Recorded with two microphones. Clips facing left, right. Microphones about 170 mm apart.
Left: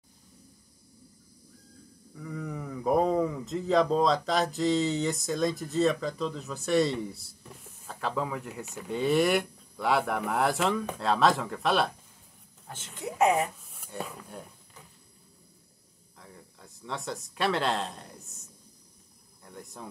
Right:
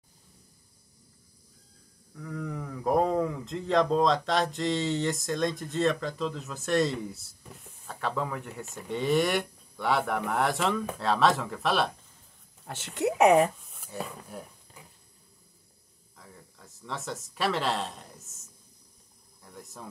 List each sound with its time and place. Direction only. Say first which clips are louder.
2.1 s speech: right 1 dB; 5° left (ahead or behind)
12.6 s speech: right 9 dB; 75° right (ahead or behind)
13.6 s dog: right 1 dB; centre (ahead or behind)
16.2 s speech: left 1 dB; centre (ahead or behind)
19.4 s speech: left 1 dB; centre (ahead or behind)